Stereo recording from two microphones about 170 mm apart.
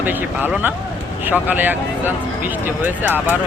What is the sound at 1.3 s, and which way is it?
Speech, 10° right (ahead or behind).